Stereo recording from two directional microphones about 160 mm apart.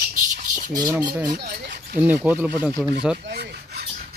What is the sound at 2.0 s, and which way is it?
Speech, 10° right (ahead or behind).